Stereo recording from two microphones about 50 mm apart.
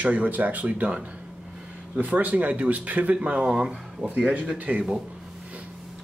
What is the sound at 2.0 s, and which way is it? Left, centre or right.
Speech, right.